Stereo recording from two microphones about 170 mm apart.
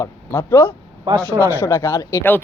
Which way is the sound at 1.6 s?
15° left (ahead or behind).